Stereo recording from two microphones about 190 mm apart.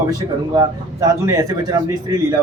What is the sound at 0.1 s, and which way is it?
A man's voice, 20° right (ahead or behind).